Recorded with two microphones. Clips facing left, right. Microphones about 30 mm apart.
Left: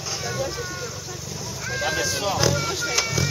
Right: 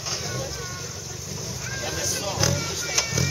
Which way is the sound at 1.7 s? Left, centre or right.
Left.